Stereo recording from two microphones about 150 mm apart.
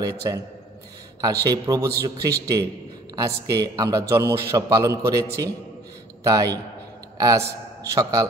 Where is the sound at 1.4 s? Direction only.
20° right (ahead or behind).